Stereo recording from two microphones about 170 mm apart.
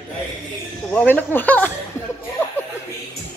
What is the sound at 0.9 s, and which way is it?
Speech, 10° left (ahead or behind).